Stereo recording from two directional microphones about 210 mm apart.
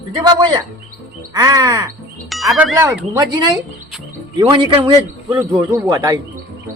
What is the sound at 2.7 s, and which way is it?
A man's voice, 10° right (ahead or behind).